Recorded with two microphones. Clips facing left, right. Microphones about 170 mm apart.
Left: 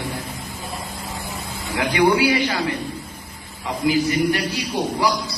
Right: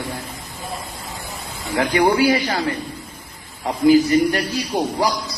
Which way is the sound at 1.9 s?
40° right (ahead or behind).